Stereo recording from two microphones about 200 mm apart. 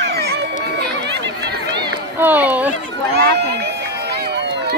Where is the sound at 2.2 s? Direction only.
10° right (ahead or behind).